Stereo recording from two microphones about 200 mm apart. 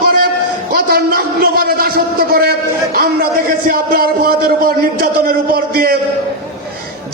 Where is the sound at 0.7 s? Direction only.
50° right (ahead or behind).